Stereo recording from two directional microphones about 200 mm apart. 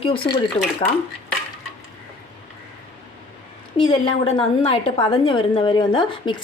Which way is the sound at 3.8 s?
25° left (ahead or behind).